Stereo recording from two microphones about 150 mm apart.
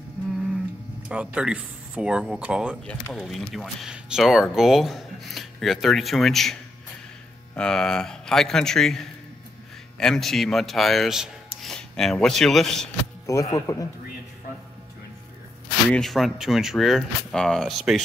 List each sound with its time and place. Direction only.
1.0 s speech: 5° right (ahead or behind)
13.3 s speech: 20° left (ahead or behind)
15.9 s speech: centre (ahead or behind)